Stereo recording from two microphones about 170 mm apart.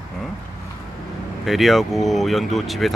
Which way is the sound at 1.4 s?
Centre (ahead or behind).